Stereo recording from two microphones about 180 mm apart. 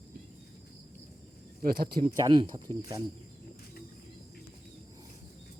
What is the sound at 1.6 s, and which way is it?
Speech, 55° right (ahead or behind).